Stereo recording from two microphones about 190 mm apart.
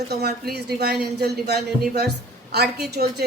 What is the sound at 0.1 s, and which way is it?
A woman's voice, 60° right (ahead or behind).